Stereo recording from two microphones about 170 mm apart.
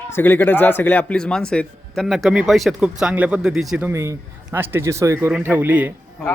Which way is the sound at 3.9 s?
15° right (ahead or behind).